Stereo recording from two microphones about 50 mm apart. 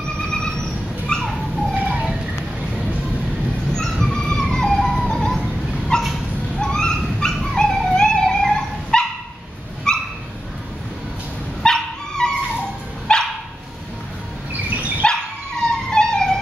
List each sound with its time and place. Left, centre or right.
0.3 s owl: centre
1.2 s dog: centre
1.8 s bird: right
3.7 s a sound: centre
5.9 s dog: centre
11.6 s dog: centre
15.0 s dog: centre